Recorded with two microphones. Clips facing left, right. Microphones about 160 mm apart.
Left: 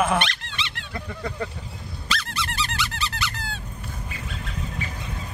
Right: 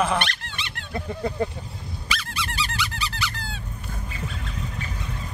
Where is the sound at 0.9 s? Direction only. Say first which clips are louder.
Right 6 dB; 25° right (ahead or behind).